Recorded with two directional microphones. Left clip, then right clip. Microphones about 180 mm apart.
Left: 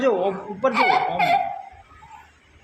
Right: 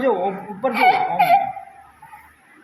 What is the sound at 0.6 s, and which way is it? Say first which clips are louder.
Speech: right 2 dB; 15° left (ahead or behind).